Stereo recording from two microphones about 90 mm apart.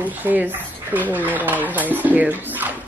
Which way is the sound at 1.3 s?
20° right (ahead or behind).